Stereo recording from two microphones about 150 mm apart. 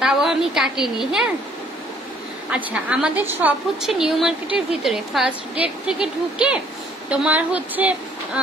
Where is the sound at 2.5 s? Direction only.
10° right (ahead or behind).